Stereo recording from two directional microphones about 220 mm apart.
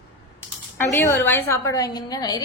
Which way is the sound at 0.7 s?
10° left (ahead or behind).